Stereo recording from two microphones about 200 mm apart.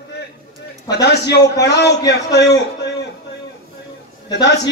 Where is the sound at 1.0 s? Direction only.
55° left (ahead or behind).